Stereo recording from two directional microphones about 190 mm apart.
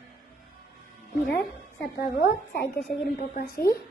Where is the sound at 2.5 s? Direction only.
60° left (ahead or behind).